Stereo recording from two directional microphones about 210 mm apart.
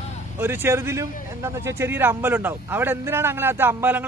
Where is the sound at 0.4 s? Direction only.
10° right (ahead or behind).